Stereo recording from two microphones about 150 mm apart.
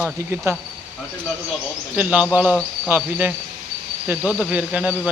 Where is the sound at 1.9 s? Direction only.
10° right (ahead or behind).